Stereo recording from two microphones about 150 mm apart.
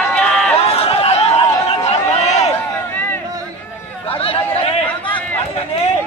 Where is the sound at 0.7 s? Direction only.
40° left (ahead or behind).